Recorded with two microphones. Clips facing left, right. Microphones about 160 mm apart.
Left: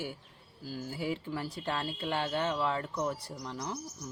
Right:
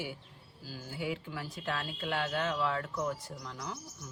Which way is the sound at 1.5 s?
35° left (ahead or behind).